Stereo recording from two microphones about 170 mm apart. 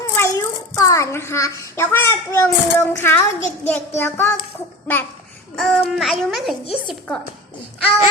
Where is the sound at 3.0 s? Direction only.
15° left (ahead or behind).